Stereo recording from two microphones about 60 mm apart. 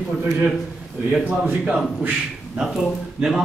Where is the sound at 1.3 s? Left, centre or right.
Right.